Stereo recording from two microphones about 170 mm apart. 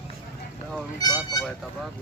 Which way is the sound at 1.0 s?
25° left (ahead or behind).